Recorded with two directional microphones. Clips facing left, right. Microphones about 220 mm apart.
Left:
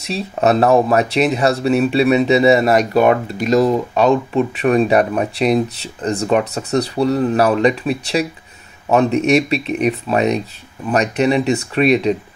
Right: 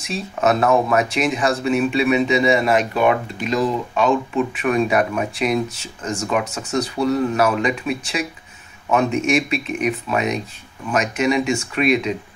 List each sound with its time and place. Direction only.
0.0 s speech: 35° left (ahead or behind)